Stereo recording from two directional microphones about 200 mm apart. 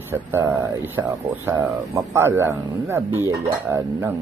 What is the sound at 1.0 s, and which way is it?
Speech, 10° right (ahead or behind).